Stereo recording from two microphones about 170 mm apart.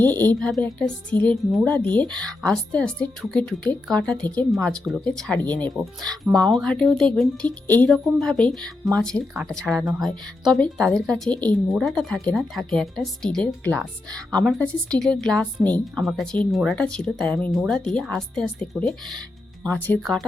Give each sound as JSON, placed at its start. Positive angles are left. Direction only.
{"t": 0.0, "sound": "a woman's voice", "side_deg": 10}